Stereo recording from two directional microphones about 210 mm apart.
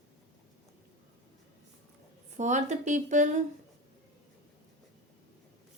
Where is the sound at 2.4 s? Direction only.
35° right (ahead or behind).